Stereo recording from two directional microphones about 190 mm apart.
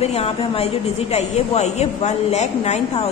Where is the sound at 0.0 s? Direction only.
35° left (ahead or behind).